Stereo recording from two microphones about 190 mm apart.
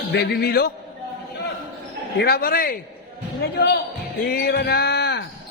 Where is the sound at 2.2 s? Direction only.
55° left (ahead or behind).